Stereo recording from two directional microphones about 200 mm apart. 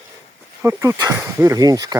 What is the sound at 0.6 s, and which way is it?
Speech, 15° right (ahead or behind).